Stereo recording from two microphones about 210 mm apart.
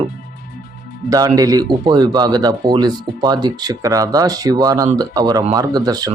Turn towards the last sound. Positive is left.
turn(degrees=-20)  # may be behind; listen again after turning